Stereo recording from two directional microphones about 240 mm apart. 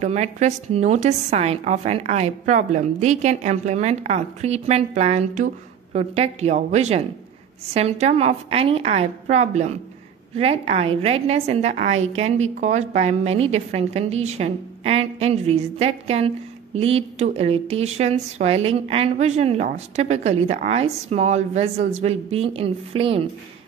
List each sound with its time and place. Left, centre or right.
0.0 s a woman's voice: right